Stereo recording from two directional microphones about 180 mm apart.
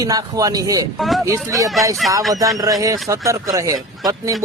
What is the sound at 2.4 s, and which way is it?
Speech, 20° right (ahead or behind).